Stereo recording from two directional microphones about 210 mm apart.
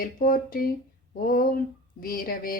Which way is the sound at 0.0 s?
45° left (ahead or behind).